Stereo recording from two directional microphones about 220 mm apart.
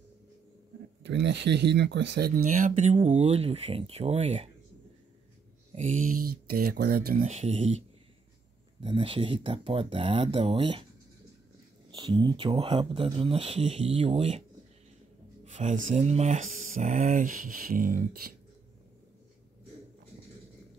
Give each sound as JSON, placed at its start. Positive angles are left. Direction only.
{"t": 1.0, "sound": "speech", "side_deg": -55}
{"t": 5.8, "sound": "speech", "side_deg": -40}
{"t": 7.1, "sound": "speech", "side_deg": -30}
{"t": 8.8, "sound": "speech", "side_deg": -25}
{"t": 11.9, "sound": "speech", "side_deg": -20}
{"t": 15.4, "sound": "speech", "side_deg": -35}